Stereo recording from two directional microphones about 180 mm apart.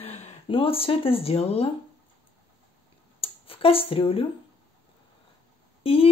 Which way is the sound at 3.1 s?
30° left (ahead or behind).